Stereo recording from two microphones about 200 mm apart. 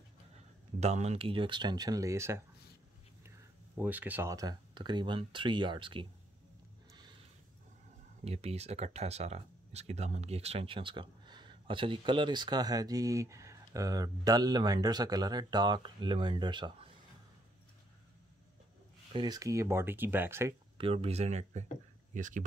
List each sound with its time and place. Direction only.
0.7 s speech: 35° right (ahead or behind)
8.2 s speech: 30° right (ahead or behind)
19.1 s speech: 20° right (ahead or behind)
20.7 s speech: 30° right (ahead or behind)